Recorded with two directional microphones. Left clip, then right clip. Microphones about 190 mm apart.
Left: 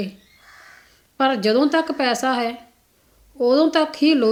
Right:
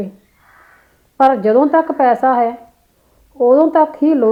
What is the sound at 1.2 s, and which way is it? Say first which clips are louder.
A woman's voice: right 7 dB; 35° left (ahead or behind).